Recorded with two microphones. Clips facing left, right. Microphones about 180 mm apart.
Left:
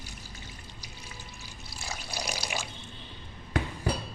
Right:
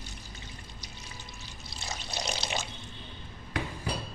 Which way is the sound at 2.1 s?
10° left (ahead or behind).